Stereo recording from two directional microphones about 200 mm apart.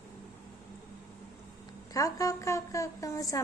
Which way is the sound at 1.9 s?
15° left (ahead or behind).